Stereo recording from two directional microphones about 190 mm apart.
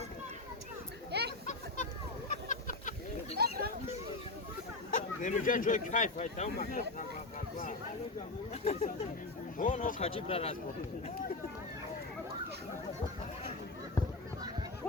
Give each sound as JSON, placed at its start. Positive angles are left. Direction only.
{"t": 1.1, "sound": "chatter", "side_deg": -60}
{"t": 1.5, "sound": "hubbub", "side_deg": 40}
{"t": 2.3, "sound": "a sound", "side_deg": 40}
{"t": 3.3, "sound": "a sound", "side_deg": -55}
{"t": 4.9, "sound": "speech", "side_deg": 40}
{"t": 8.6, "sound": "speech", "side_deg": 35}